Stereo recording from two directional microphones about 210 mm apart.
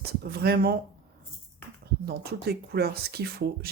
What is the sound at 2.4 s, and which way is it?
Speech, 50° right (ahead or behind).